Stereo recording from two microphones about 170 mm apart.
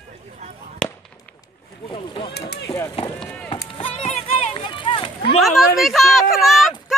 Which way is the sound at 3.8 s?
35° left (ahead or behind).